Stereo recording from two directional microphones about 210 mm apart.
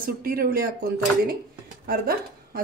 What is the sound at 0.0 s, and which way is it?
A woman's voice, 45° right (ahead or behind).